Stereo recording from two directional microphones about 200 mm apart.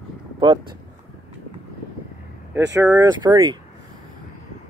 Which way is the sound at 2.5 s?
15° right (ahead or behind).